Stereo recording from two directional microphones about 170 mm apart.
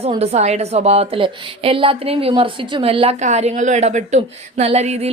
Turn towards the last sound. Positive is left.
turn(degrees=-40)  # may be behind; listen again after turning